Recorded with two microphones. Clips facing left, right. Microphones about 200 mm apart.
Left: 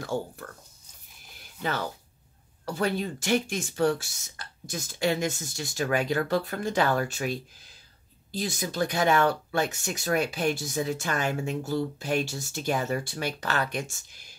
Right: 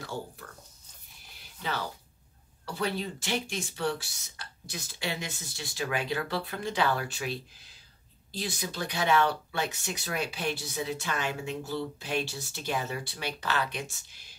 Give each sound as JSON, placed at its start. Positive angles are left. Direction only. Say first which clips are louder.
{"t": 0.0, "sound": "speech", "louder": "left 7 dB", "side_deg": 50}
{"t": 2.6, "sound": "speech", "louder": "left 4 dB", "side_deg": 45}